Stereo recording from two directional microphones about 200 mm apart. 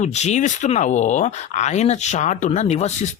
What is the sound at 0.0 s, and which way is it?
Speech, 35° left (ahead or behind).